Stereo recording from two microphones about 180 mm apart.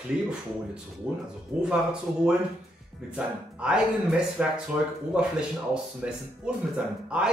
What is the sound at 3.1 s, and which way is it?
Speech, 5° right (ahead or behind).